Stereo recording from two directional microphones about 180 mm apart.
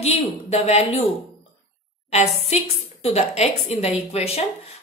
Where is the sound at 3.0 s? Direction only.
35° left (ahead or behind).